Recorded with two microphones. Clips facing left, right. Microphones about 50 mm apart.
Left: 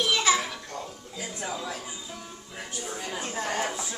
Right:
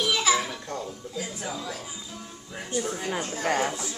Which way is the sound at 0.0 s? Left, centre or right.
Centre.